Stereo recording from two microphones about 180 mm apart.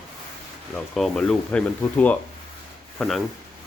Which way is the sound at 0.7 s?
Centre (ahead or behind).